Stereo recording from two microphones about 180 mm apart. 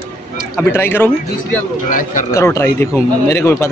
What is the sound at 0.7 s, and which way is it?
Speech, 10° left (ahead or behind).